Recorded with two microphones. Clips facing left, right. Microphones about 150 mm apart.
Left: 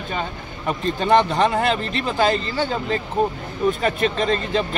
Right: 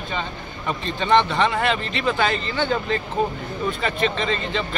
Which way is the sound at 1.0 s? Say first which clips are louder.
Left 1 dB; 40° left (ahead or behind).